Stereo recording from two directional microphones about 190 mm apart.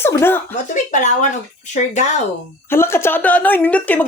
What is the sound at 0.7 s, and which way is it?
Speech, 40° left (ahead or behind).